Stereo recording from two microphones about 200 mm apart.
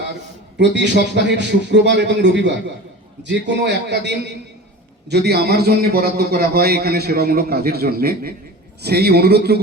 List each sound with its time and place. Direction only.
0.6 s a man's voice: 60° right (ahead or behind)